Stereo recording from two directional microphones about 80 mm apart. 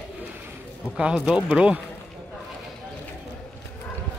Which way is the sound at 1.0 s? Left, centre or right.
Centre.